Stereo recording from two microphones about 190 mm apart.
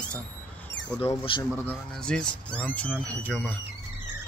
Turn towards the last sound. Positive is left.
turn(degrees=5)  # may be behind; listen again after turning